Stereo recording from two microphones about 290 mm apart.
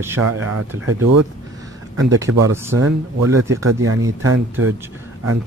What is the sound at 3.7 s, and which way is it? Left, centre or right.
Speech, right.